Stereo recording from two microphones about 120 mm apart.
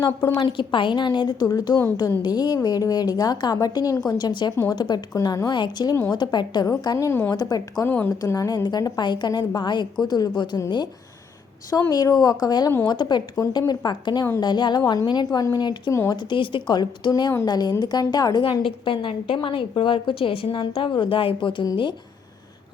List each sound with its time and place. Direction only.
0.3 s a woman's voice: 45° left (ahead or behind); by 8.1 s 15° left (ahead or behind)
8.2 s a woman's voice: 30° left (ahead or behind)
11.8 s a woman's voice: 30° left (ahead or behind); by 21.7 s 45° left (ahead or behind)